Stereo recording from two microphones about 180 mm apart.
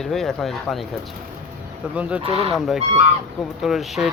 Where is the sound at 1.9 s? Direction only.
5° right (ahead or behind).